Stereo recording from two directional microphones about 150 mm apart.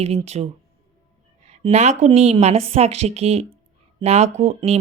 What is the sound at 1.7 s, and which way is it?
Speech, 50° right (ahead or behind).